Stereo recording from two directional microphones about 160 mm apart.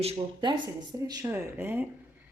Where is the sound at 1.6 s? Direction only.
10° right (ahead or behind).